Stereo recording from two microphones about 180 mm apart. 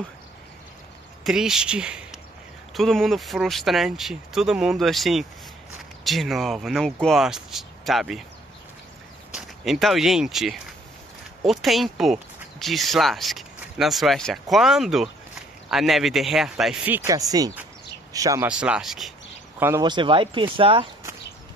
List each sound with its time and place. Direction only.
1.2 s speech: 5° right (ahead or behind)
9.3 s speech: centre (ahead or behind); by 18.5 s 20° right (ahead or behind)
18.5 s speech: 5° right (ahead or behind)
19.8 s speech: 25° right (ahead or behind)